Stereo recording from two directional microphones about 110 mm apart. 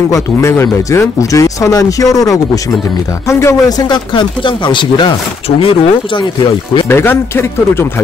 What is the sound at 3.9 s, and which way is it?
Speech, 45° left (ahead or behind).